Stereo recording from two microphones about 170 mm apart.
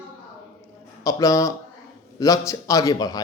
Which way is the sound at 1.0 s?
20° left (ahead or behind).